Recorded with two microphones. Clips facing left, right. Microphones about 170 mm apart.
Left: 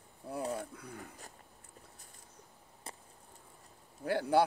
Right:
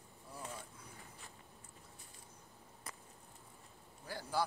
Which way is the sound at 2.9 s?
30° left (ahead or behind).